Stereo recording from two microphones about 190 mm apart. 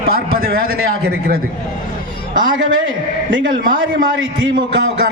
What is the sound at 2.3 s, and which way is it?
A man's voice, 45° right (ahead or behind).